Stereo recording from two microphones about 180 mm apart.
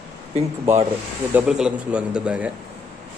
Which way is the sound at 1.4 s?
5° right (ahead or behind).